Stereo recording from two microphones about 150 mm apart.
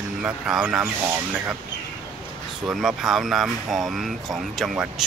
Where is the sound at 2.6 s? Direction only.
5° right (ahead or behind).